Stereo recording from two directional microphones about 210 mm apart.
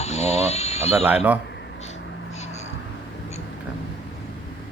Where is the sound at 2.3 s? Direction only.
30° left (ahead or behind).